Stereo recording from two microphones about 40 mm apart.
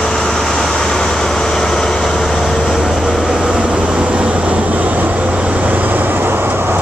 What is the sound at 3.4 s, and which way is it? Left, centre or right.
Vehicle, right.